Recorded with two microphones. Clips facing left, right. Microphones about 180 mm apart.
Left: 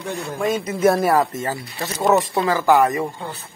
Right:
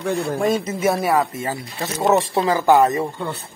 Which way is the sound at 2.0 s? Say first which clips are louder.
Even; 25° right (ahead or behind).